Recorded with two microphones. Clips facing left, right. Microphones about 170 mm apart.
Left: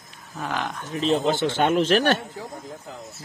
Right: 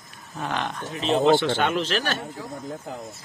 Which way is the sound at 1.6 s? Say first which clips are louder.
Left 5 dB; 50° left (ahead or behind).